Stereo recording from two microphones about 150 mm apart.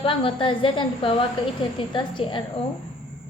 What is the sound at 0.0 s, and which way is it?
A woman's voice, 35° left (ahead or behind).